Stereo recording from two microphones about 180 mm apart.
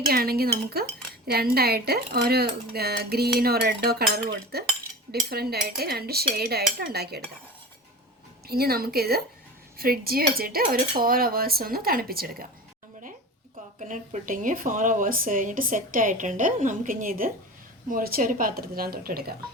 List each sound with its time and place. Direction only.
0.1 s speech: 60° right (ahead or behind)
8.4 s speech: 60° right (ahead or behind)
13.7 s speech: 45° right (ahead or behind)